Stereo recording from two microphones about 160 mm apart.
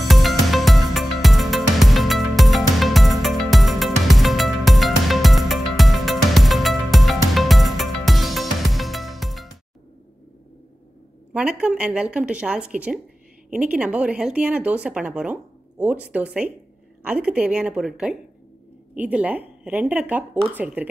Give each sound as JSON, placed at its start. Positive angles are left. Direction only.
{"t": 0.1, "sound": "music", "side_deg": 0}
{"t": 11.3, "sound": "speech", "side_deg": -5}